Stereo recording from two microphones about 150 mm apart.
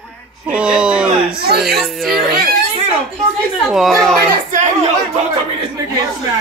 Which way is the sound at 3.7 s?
Centre (ahead or behind).